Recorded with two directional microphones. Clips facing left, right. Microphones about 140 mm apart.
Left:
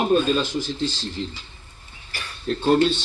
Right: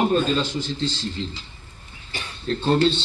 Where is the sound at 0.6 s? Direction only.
20° right (ahead or behind).